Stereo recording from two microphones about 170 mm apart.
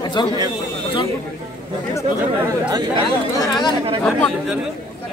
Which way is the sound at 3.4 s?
25° left (ahead or behind).